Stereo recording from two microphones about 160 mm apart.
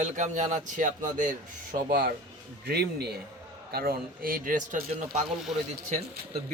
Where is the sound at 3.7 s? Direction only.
70° right (ahead or behind); by 5.2 s 50° right (ahead or behind).